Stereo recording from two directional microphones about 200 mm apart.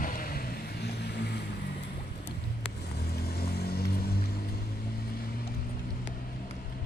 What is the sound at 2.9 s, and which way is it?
Vehicle, 55° left (ahead or behind).